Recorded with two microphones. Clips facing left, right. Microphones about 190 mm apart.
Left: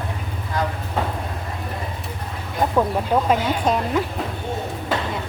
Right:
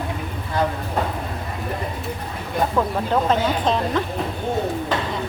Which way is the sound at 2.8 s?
10° left (ahead or behind).